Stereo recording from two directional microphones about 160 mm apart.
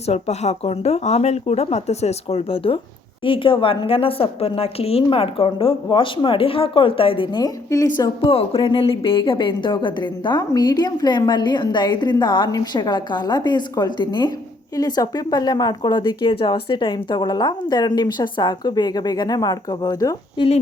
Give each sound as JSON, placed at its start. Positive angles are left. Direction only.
{"t": 0.0, "sound": "speech", "side_deg": 40}
{"t": 8.2, "sound": "a woman's voice", "side_deg": 35}